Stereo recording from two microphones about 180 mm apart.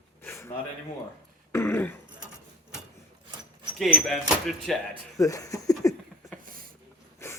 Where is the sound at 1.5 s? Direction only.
10° left (ahead or behind).